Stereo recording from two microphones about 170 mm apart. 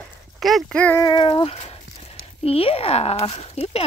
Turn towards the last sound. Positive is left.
turn(degrees=35)  # may be behind; listen again after turning